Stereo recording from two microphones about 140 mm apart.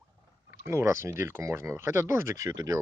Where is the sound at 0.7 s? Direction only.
20° right (ahead or behind).